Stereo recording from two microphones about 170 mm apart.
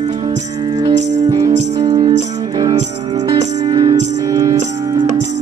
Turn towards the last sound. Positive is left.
turn(degrees=-25)  # may be behind; listen again after turning